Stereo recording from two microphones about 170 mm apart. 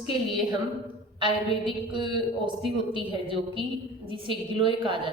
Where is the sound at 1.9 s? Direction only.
25° right (ahead or behind).